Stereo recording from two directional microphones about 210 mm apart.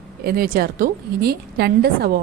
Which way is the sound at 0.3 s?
45° right (ahead or behind).